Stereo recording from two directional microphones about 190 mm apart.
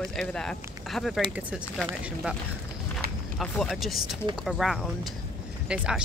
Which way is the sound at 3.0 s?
55° right (ahead or behind).